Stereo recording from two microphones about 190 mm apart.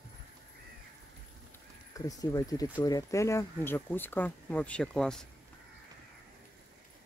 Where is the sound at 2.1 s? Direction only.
20° left (ahead or behind); by 5.2 s 5° left (ahead or behind).